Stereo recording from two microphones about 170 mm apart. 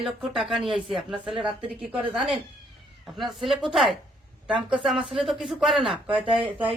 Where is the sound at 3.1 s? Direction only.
Centre (ahead or behind).